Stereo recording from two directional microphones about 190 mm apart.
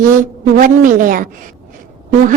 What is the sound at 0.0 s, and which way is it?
A woman's voice, 45° right (ahead or behind).